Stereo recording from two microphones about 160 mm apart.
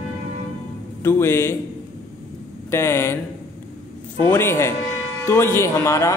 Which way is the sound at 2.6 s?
15° left (ahead or behind).